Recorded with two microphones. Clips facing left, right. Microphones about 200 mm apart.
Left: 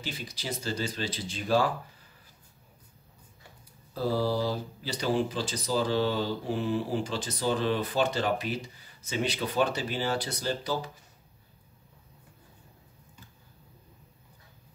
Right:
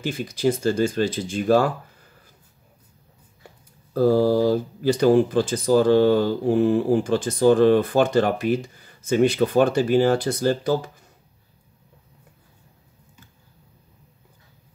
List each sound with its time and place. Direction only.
0.0 s speech: 50° right (ahead or behind)
3.9 s speech: 50° right (ahead or behind)